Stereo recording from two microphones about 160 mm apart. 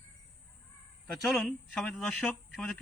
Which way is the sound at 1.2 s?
Centre (ahead or behind).